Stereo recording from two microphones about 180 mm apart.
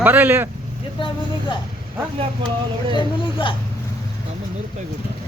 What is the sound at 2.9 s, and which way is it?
Speech, 30° left (ahead or behind).